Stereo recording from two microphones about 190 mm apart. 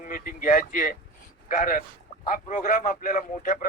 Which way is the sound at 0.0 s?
50° left (ahead or behind).